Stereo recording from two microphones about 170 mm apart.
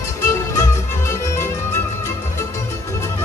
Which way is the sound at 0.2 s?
15° left (ahead or behind).